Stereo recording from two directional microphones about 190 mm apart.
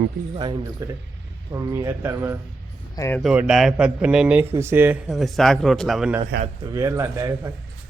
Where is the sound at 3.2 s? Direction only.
5° right (ahead or behind).